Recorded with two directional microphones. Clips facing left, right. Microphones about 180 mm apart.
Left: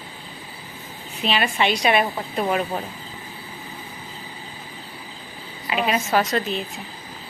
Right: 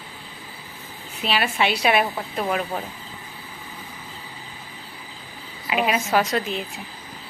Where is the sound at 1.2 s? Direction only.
5° right (ahead or behind).